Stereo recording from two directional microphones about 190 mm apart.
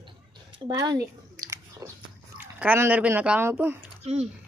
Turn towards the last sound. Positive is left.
turn(degrees=-35)  # may be behind; listen again after turning